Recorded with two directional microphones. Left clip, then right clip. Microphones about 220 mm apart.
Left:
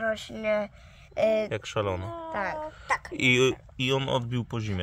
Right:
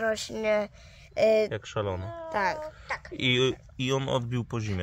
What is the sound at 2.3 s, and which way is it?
Speech, 50° right (ahead or behind).